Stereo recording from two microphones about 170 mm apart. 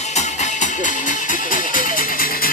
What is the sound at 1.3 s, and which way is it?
Music, 55° left (ahead or behind).